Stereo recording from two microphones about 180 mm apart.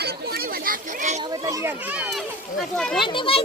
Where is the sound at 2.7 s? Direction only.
5° left (ahead or behind).